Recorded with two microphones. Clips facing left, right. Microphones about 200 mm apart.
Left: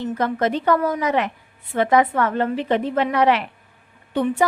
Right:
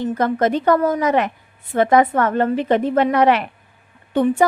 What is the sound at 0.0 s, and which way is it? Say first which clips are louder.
A woman's voice: right 3 dB; 45° right (ahead or behind).